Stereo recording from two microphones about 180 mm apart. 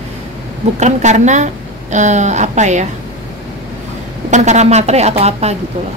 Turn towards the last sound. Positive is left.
turn(degrees=-35)  # may be behind; listen again after turning